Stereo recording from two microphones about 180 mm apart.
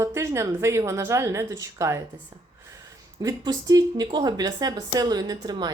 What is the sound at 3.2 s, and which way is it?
Speech, 20° right (ahead or behind).